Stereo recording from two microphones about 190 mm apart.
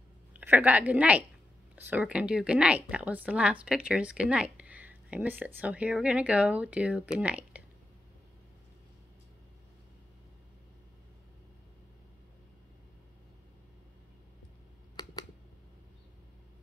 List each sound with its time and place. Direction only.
0.3 s a woman's voice: 10° right (ahead or behind)
15.0 s computer keyboard: 20° left (ahead or behind)